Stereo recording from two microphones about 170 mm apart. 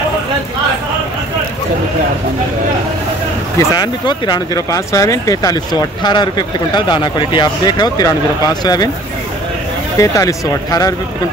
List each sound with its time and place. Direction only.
3.5 s speech: 25° left (ahead or behind)
9.9 s speech: 20° left (ahead or behind)